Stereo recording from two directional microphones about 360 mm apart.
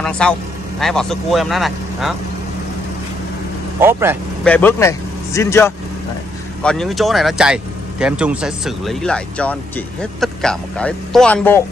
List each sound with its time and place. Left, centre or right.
0.0 s a man's voice: centre
3.8 s speech: centre
4.6 s speech: centre